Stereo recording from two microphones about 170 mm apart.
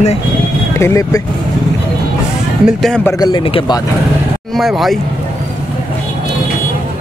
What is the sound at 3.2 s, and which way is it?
Speech, 30° left (ahead or behind).